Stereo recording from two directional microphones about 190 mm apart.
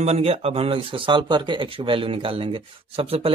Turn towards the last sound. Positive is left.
turn(degrees=-30)  # may be behind; listen again after turning